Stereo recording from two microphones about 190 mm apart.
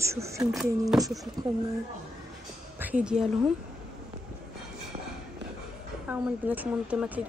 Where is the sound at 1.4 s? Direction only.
20° right (ahead or behind).